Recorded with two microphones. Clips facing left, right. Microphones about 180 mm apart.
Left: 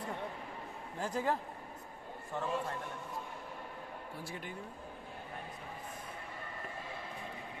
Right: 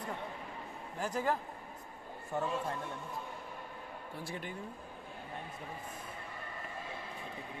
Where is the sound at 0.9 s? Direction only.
25° left (ahead or behind).